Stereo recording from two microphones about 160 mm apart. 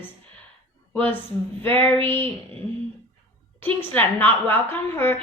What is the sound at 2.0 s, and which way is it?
Speech, 35° right (ahead or behind).